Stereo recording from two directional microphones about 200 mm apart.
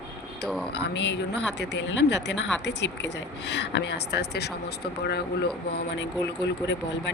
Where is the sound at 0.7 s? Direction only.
60° left (ahead or behind).